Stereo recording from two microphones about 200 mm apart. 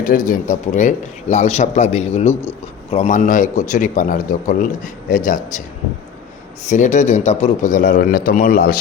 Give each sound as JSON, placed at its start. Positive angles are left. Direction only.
{"t": 0.0, "sound": "speech", "side_deg": 40}
{"t": 6.7, "sound": "speech", "side_deg": 40}